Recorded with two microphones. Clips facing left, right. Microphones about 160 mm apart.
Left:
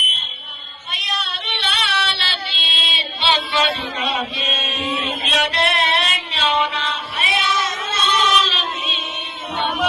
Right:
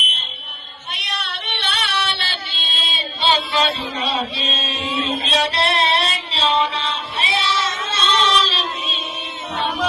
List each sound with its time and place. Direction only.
0.9 s child singing: 65° right (ahead or behind); by 9.0 s 35° right (ahead or behind)